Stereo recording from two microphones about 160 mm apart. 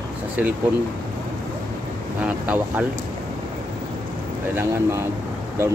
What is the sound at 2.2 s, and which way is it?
Speech, 10° right (ahead or behind).